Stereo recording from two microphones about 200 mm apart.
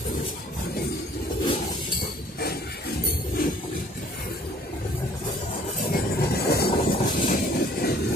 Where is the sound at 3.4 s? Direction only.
50° left (ahead or behind).